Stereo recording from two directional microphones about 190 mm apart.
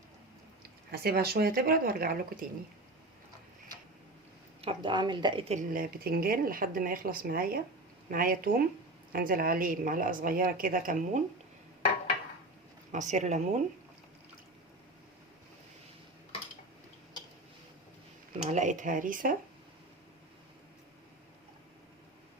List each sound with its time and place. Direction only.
0.9 s a woman's voice: 55° right (ahead or behind)
4.6 s a woman's voice: 25° right (ahead or behind)
5.5 s a woman's voice: 45° right (ahead or behind)
12.9 s speech: 40° right (ahead or behind)
18.4 s a woman's voice: 40° right (ahead or behind)